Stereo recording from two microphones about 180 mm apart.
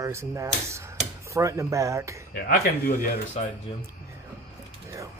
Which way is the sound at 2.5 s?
55° left (ahead or behind).